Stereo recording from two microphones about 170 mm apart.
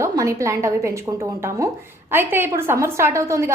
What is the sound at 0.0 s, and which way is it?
A woman's voice, 15° right (ahead or behind).